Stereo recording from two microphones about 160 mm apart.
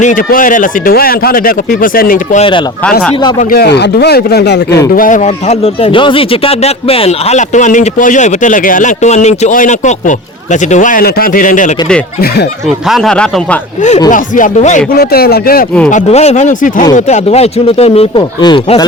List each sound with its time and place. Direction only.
0.0 s speech: 55° left (ahead or behind)
3.5 s speech: 80° left
4.9 s speech: 55° left (ahead or behind)
12.6 s speech: centre (ahead or behind)
14.1 s speech: 55° left (ahead or behind)
14.9 s speech: 75° left (ahead or behind)
15.9 s speech: 45° left (ahead or behind)
18.2 s speech: 25° left (ahead or behind)